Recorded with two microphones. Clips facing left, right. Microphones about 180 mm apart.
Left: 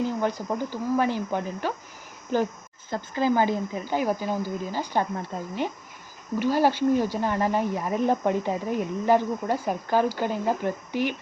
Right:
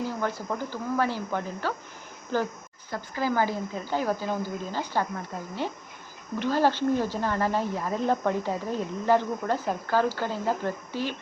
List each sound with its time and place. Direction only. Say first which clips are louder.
0.2 s speech: left 3 dB; 20° left (ahead or behind)
6.4 s speech: left 2 dB; 10° left (ahead or behind)